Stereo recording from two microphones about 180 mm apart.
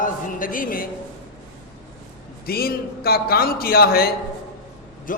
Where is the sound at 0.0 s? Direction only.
50° left (ahead or behind).